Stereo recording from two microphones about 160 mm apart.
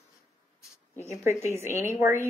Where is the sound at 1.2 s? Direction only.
15° right (ahead or behind).